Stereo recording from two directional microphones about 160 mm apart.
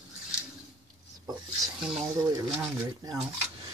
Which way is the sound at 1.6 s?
5° right (ahead or behind).